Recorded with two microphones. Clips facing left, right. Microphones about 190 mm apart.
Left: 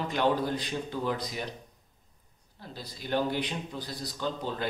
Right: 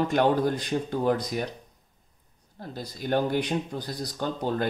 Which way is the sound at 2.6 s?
50° right (ahead or behind).